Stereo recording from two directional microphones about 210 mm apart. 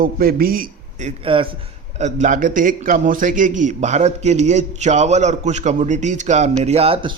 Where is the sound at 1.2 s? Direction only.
25° right (ahead or behind).